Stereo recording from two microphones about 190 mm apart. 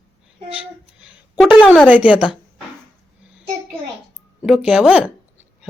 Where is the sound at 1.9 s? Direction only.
5° right (ahead or behind).